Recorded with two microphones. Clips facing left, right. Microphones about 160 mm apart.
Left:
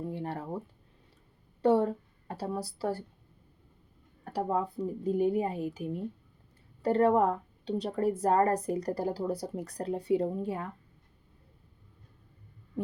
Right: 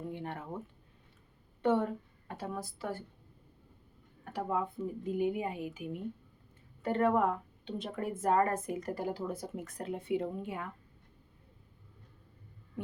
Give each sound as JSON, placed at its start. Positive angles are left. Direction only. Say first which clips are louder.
{"t": 0.1, "sound": "a sound", "louder": "left 4 dB", "side_deg": 35}
{"t": 1.6, "sound": "a woman's voice", "louder": "left 5 dB", "side_deg": 35}
{"t": 4.2, "sound": "a woman's voice", "louder": "left 4 dB", "side_deg": 35}